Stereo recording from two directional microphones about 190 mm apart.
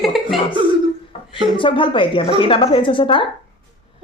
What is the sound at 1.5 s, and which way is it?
A child's voice, 25° left (ahead or behind).